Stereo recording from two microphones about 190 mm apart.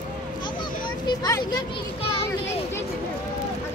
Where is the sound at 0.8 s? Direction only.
20° left (ahead or behind).